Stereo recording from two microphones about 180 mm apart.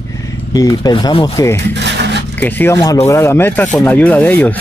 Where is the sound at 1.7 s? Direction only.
75° right (ahead or behind).